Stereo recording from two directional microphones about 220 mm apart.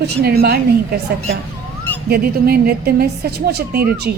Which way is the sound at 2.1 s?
45° right (ahead or behind).